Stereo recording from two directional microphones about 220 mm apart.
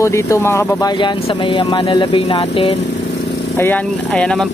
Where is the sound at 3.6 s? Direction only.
5° left (ahead or behind).